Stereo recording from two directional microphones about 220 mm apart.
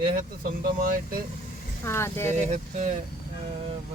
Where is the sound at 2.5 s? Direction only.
30° right (ahead or behind).